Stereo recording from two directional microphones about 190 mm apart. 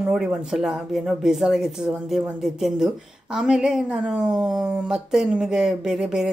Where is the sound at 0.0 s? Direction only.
5° right (ahead or behind).